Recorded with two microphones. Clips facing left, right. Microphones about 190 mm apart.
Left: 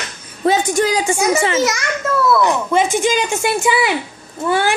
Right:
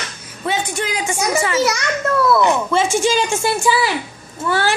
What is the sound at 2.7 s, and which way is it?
Speech, 15° left (ahead or behind).